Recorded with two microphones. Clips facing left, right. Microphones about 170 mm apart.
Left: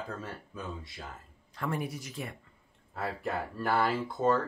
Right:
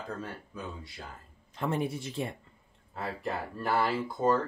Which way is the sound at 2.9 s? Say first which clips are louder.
Left 1 dB; 5° left (ahead or behind).